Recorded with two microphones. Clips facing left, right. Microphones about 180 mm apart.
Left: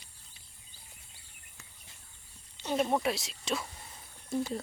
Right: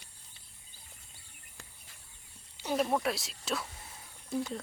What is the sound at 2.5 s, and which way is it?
Speech, 5° right (ahead or behind).